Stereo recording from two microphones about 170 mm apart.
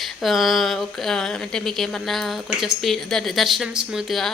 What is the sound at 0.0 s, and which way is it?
Speech, centre (ahead or behind).